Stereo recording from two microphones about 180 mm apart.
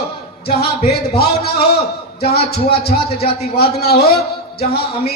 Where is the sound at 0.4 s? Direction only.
60° left (ahead or behind).